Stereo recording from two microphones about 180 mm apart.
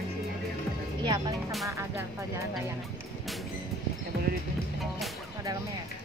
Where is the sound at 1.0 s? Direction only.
25° right (ahead or behind).